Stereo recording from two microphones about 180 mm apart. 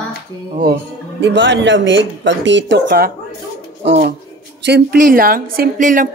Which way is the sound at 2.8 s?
55° right (ahead or behind).